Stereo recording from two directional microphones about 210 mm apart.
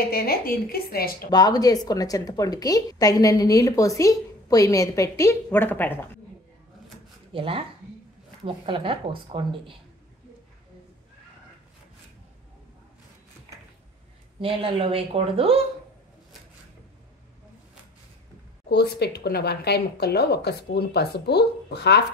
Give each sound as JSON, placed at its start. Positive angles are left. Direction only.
{"t": 0.1, "sound": "speech", "side_deg": 45}
{"t": 1.3, "sound": "a woman's voice", "side_deg": 20}
{"t": 7.3, "sound": "speech", "side_deg": -25}
{"t": 14.4, "sound": "speech", "side_deg": -25}
{"t": 18.7, "sound": "speech", "side_deg": 50}